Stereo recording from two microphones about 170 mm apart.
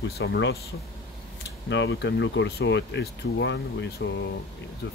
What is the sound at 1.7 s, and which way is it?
Speech, 90° left.